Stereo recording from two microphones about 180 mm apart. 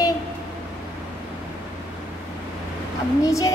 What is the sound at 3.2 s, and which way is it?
Child singing, 20° left (ahead or behind).